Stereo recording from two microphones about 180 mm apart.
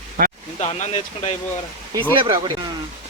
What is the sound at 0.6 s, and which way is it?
Speech, 35° left (ahead or behind).